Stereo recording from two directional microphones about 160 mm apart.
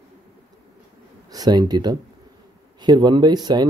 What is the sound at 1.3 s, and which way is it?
Speech, 25° right (ahead or behind).